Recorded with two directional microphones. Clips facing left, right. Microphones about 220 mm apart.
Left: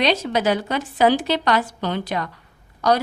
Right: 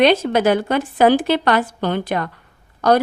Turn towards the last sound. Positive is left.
turn(degrees=-55)  # may be behind; listen again after turning